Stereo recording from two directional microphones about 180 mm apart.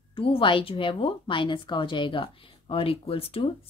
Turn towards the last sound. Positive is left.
turn(degrees=30)  # may be behind; listen again after turning